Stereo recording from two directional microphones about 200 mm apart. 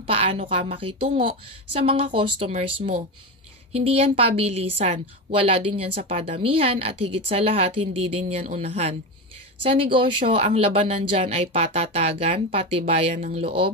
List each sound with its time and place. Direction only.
0.0 s a woman's voice: 30° right (ahead or behind)
3.7 s a woman's voice: 30° right (ahead or behind)